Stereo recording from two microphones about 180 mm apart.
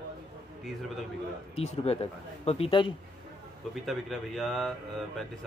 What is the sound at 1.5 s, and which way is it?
Speech, 35° left (ahead or behind).